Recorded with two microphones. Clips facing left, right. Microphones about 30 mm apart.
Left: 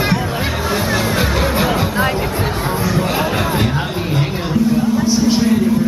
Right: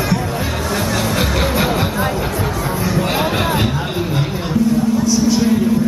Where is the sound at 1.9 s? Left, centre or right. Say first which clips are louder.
Left 2 dB; left.